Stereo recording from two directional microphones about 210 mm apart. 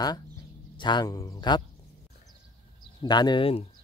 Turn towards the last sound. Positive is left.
turn(degrees=25)  # may be behind; listen again after turning